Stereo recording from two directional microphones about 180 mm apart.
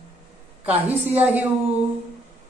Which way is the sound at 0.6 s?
10° right (ahead or behind).